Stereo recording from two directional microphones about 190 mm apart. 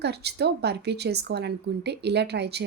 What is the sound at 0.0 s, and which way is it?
A woman's voice, 60° right (ahead or behind).